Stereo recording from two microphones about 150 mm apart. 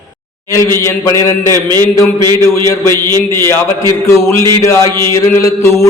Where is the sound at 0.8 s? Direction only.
20° left (ahead or behind).